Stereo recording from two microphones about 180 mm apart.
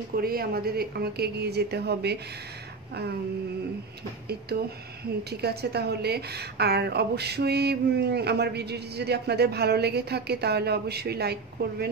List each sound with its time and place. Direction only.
0.1 s a woman's voice: 55° right (ahead or behind)
5.3 s a woman's voice: 65° right (ahead or behind)